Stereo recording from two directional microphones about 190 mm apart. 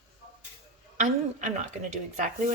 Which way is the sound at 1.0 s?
40° right (ahead or behind).